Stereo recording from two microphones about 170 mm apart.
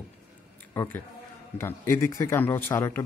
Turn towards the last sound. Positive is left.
turn(degrees=15)  # may be behind; listen again after turning